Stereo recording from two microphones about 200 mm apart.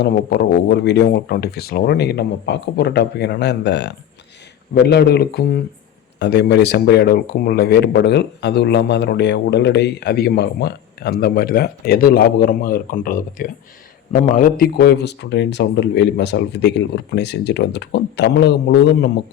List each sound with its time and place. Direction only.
0.0 s speech: 55° left (ahead or behind)